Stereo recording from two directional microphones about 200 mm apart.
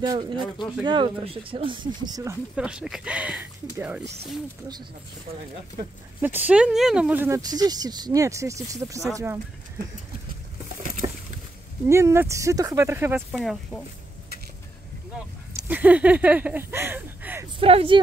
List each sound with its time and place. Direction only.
0.0 s speech: 20° right (ahead or behind)
2.5 s speech: 5° right (ahead or behind)
6.2 s speech: 10° right (ahead or behind)
10.8 s a sound: 35° right (ahead or behind)
11.9 s speech: 15° right (ahead or behind)
13.4 s speech: centre (ahead or behind)
15.7 s speech: 5° right (ahead or behind)
17.6 s speech: 25° right (ahead or behind)